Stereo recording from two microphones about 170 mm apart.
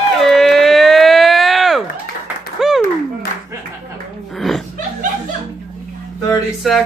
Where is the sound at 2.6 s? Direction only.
Centre (ahead or behind).